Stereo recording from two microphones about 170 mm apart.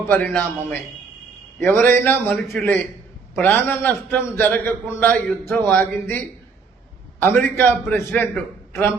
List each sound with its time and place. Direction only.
0.0 s a man's voice: 10° left (ahead or behind)